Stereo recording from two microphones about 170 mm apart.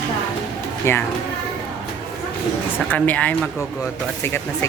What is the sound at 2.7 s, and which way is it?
Speech, 10° left (ahead or behind).